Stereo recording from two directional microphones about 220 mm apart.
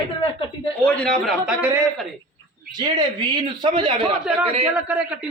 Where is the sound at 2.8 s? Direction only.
20° right (ahead or behind).